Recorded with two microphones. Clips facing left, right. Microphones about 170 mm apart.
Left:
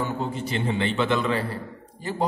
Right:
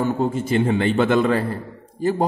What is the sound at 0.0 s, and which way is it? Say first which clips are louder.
A man's voice: right 7 dB; 50° right (ahead or behind).